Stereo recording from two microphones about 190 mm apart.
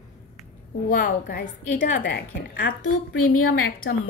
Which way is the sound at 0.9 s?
50° left (ahead or behind).